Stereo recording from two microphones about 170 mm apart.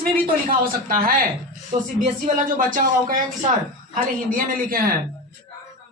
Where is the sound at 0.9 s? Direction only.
55° right (ahead or behind).